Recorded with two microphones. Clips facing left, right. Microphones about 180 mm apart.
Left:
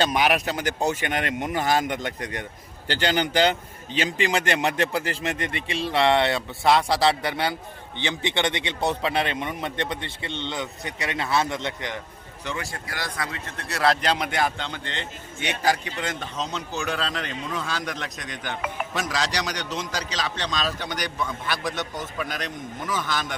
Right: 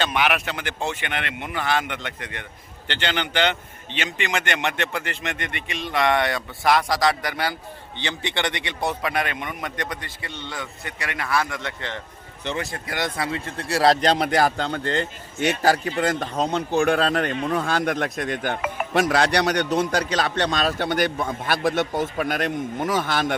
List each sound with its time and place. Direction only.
0.0 s a man's voice: 40° left (ahead or behind); by 11.9 s 20° left (ahead or behind)
12.5 s a man's voice: 25° right (ahead or behind); by 23.3 s 55° right (ahead or behind)